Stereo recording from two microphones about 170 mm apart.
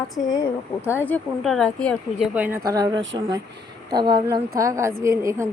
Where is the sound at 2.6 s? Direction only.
20° right (ahead or behind).